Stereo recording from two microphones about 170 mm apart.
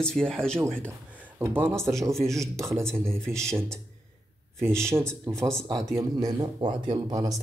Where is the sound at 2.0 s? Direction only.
15° right (ahead or behind).